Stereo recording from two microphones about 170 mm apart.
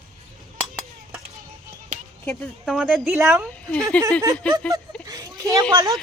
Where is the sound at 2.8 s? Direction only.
5° right (ahead or behind).